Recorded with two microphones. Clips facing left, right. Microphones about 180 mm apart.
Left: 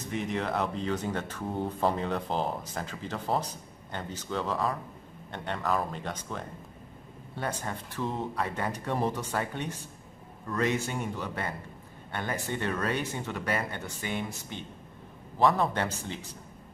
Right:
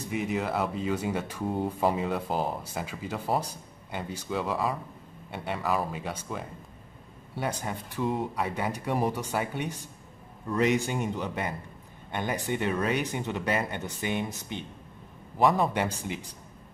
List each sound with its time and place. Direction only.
0.0 s speech: 5° right (ahead or behind)